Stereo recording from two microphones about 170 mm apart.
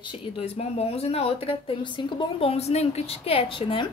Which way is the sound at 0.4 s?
40° left (ahead or behind).